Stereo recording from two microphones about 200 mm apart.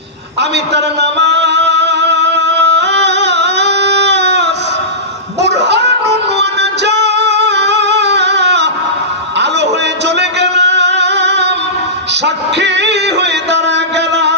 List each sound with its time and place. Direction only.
0.3 s music: 60° right (ahead or behind)
5.4 s a sound: 60° right (ahead or behind)
6.3 s music: 60° right (ahead or behind)
10.2 s music: 60° right (ahead or behind)